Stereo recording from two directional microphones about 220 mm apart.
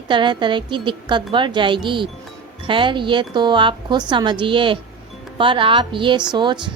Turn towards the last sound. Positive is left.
turn(degrees=-20)  # may be behind; listen again after turning